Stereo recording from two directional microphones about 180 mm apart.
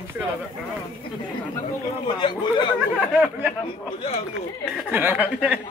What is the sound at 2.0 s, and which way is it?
Speech, 25° left (ahead or behind).